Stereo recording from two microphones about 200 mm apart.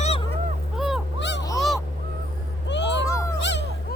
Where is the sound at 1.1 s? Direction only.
60° left (ahead or behind).